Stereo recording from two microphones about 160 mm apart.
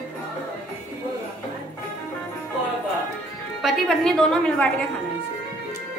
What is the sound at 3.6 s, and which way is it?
A woman's voice, centre (ahead or behind).